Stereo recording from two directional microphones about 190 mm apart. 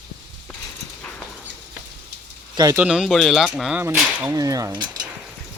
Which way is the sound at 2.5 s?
20° right (ahead or behind).